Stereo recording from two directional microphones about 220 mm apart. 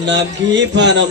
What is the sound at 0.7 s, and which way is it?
Speech, 55° right (ahead or behind).